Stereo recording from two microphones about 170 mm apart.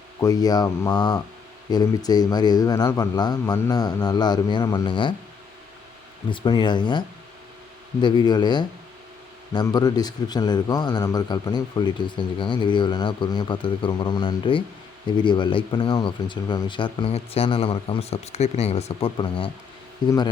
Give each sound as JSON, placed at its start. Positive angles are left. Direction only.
{"t": 0.2, "sound": "a man's voice", "side_deg": 20}
{"t": 6.3, "sound": "a man's voice", "side_deg": 25}
{"t": 8.0, "sound": "a man's voice", "side_deg": 25}